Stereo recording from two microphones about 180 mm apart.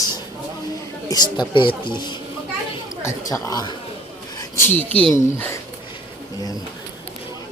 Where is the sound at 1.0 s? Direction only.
20° left (ahead or behind).